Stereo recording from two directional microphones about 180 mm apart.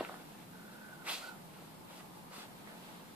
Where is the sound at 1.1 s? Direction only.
5° right (ahead or behind).